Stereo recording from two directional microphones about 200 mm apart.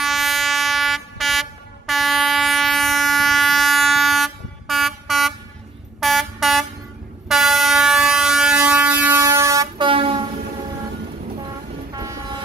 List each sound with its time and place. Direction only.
0.0 s a sound: centre (ahead or behind)
7.2 s air horn: centre (ahead or behind); by 10.2 s 25° right (ahead or behind)
12.0 s vehicle: 15° right (ahead or behind)